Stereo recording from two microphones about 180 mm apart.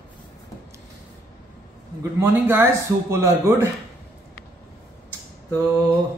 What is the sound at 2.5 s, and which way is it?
Speech, 15° right (ahead or behind).